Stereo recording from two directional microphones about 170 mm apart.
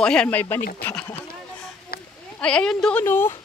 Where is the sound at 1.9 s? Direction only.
60° left (ahead or behind).